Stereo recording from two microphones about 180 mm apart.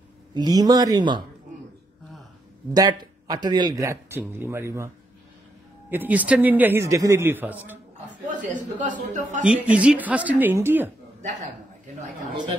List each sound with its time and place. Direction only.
0.3 s speech: 20° right (ahead or behind)
2.7 s a man's voice: 20° right (ahead or behind)
8.8 s a man's voice: 45° right (ahead or behind)
9.4 s a man's voice: 5° right (ahead or behind)